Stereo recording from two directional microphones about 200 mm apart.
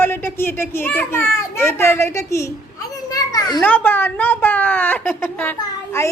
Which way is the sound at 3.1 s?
15° left (ahead or behind).